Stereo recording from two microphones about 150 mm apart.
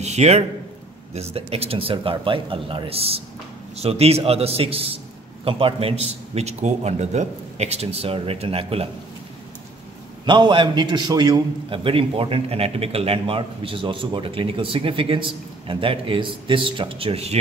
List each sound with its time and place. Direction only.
0.0 s a man's voice: 50° right (ahead or behind)
10.2 s a man's voice: 30° right (ahead or behind)